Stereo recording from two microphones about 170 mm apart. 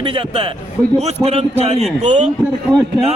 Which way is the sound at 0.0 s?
30° right (ahead or behind).